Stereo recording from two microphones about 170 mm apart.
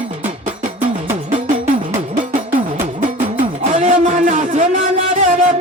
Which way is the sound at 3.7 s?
45° right (ahead or behind).